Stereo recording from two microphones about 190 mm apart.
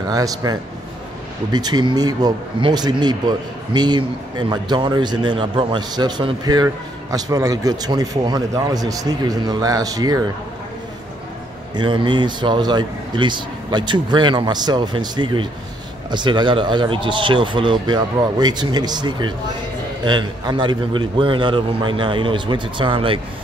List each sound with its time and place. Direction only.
0.1 s speech: 20° right (ahead or behind)
11.7 s speech: 25° right (ahead or behind)